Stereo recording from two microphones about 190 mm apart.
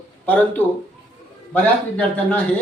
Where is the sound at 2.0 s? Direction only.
5° left (ahead or behind).